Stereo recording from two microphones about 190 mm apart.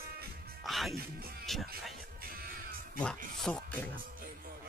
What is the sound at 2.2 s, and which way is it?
Music, 50° right (ahead or behind).